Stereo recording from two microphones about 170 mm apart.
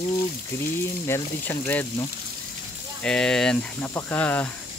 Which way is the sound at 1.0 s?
15° left (ahead or behind).